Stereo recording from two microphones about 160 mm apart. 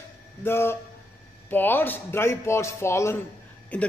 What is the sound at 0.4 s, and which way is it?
A man's voice, 15° left (ahead or behind).